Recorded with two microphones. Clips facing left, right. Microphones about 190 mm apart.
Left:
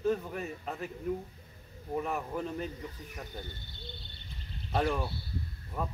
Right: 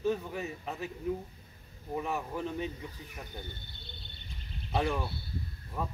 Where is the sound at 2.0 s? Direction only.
Centre (ahead or behind).